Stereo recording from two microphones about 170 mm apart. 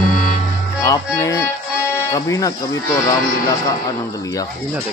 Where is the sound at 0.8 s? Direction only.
20° left (ahead or behind).